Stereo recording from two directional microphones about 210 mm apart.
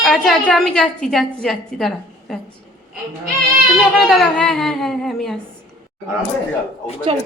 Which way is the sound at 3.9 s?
Centre (ahead or behind).